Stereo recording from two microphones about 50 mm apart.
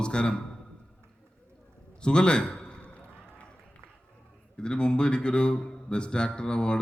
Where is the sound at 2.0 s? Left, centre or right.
Centre.